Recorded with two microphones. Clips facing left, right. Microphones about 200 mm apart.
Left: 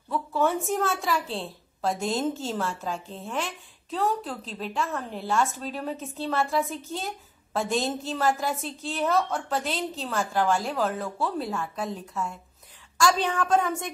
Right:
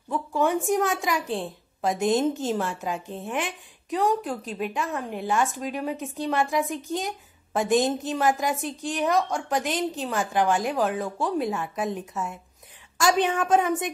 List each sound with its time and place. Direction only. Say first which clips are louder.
0.1 s a woman's voice: right 1 dB; 15° right (ahead or behind)